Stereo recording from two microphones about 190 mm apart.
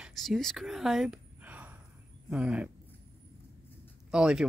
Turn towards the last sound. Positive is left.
turn(degrees=-5)  # may be behind; listen again after turning